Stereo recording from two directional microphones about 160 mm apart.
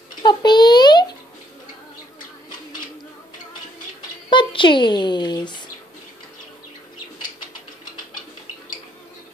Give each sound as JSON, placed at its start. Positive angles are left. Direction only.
{"t": 0.2, "sound": "babbling", "side_deg": 30}
{"t": 4.3, "sound": "a child's voice", "side_deg": 30}